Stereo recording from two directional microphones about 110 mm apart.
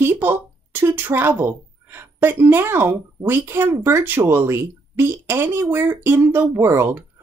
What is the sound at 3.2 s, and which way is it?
Speech, 20° right (ahead or behind).